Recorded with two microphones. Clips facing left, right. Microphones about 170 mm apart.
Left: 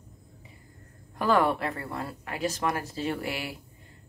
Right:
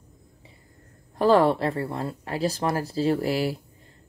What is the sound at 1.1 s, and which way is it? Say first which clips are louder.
Speech: right 5 dB; 35° right (ahead or behind).